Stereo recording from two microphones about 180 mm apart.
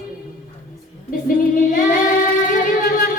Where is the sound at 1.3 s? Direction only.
50° left (ahead or behind).